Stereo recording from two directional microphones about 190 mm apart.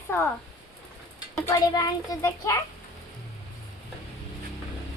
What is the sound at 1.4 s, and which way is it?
A child's voice, 20° left (ahead or behind).